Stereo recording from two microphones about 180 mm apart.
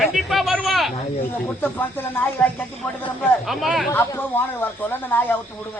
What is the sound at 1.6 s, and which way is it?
Speech, 10° left (ahead or behind).